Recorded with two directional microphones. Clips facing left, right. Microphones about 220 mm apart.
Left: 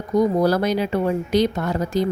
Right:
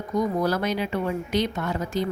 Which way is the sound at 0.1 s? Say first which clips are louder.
Left 6 dB; 35° left (ahead or behind).